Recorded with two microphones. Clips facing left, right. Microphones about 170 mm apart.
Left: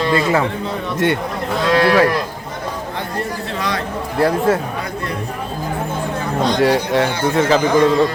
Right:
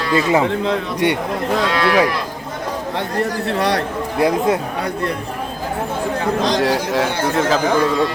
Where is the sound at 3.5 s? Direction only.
65° right (ahead or behind).